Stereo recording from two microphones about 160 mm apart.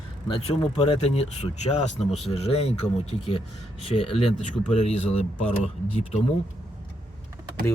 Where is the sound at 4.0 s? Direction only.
35° left (ahead or behind).